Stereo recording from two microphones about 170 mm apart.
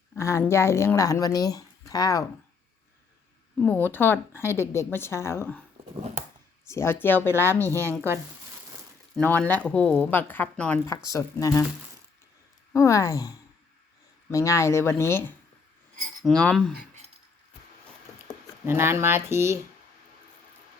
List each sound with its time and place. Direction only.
0.2 s speech: 15° left (ahead or behind)
3.6 s speech: 10° left (ahead or behind)
6.7 s speech: 15° left (ahead or behind)
7.8 s speech: 15° right (ahead or behind)
9.1 s speech: 10° left (ahead or behind)
12.7 s speech: 20° left (ahead or behind)
18.6 s speech: 15° right (ahead or behind)